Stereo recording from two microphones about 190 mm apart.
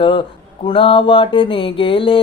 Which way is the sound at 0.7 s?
30° left (ahead or behind).